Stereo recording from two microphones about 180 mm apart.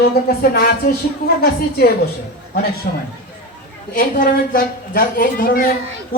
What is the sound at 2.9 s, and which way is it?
Speech, 50° left (ahead or behind).